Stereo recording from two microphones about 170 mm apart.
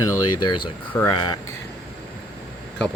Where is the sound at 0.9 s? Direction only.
15° left (ahead or behind).